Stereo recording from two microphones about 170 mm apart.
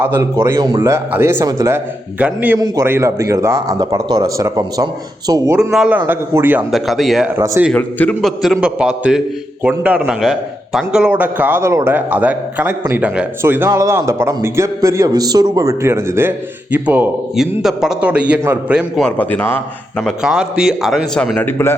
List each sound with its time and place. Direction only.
0.0 s a man's voice: 15° right (ahead or behind)
2.6 s a man's voice: 20° right (ahead or behind)
5.5 s a man's voice: 5° right (ahead or behind)
6.7 s a man's voice: centre (ahead or behind)
7.3 s a man's voice: 15° right (ahead or behind)
7.7 s a man's voice: 10° left (ahead or behind)
19.0 s a man's voice: 10° left (ahead or behind)
21.3 s speech: 15° left (ahead or behind)